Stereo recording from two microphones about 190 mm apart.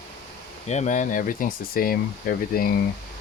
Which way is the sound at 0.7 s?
40° left (ahead or behind).